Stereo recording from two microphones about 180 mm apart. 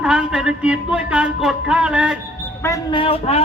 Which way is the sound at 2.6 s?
20° left (ahead or behind).